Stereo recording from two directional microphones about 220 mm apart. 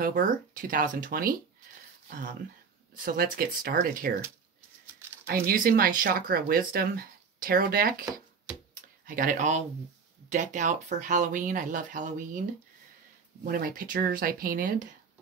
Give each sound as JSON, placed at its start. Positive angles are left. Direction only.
{"t": 0.0, "sound": "speech", "side_deg": -40}
{"t": 5.2, "sound": "speech", "side_deg": -40}
{"t": 9.0, "sound": "speech", "side_deg": -40}